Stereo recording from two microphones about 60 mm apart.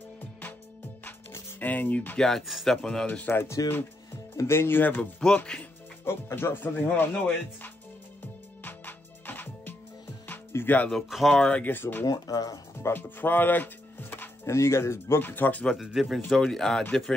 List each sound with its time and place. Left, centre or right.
1.6 s speech: left
2.1 s a man's voice: centre
3.3 s speech: left
5.2 s speech: centre
6.0 s speech: left
8.6 s music: left
10.5 s speech: left
11.0 s a man's voice: centre
11.4 s speech: left
11.7 s speech: left
12.1 s speech: left
12.9 s speech: left
14.4 s speech: left
15.8 s a man's voice: centre